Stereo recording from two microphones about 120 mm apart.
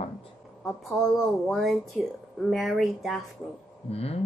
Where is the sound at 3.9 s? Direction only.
55° left (ahead or behind).